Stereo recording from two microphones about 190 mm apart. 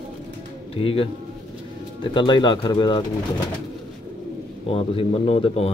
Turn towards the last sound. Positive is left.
turn(degrees=30)  # may be behind; listen again after turning